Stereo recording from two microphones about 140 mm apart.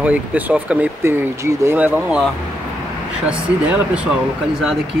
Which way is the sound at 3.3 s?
10° right (ahead or behind).